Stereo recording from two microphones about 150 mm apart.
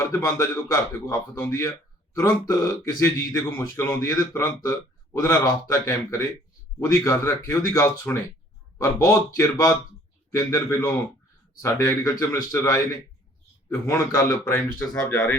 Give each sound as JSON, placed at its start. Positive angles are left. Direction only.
{"t": 0.0, "sound": "speech", "side_deg": 20}